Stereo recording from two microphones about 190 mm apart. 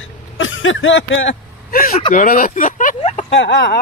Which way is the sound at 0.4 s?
90° left.